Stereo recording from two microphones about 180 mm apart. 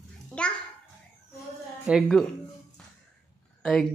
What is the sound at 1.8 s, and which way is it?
Speech, centre (ahead or behind).